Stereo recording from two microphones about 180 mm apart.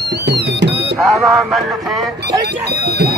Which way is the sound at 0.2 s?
70° right (ahead or behind).